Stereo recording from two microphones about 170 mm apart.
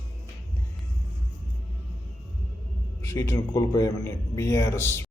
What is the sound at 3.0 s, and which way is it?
A man's voice, 15° left (ahead or behind).